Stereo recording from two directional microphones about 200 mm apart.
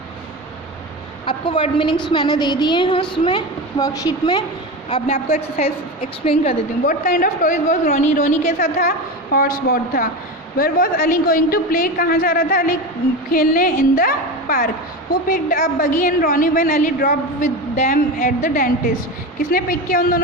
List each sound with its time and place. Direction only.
1.2 s a woman's voice: 25° left (ahead or behind)
5.1 s a woman's voice: 35° left (ahead or behind)
6.8 s a woman's voice: 45° left (ahead or behind)
9.3 s a woman's voice: 45° left (ahead or behind)